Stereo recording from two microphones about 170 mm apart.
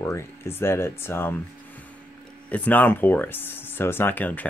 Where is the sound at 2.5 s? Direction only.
10° left (ahead or behind).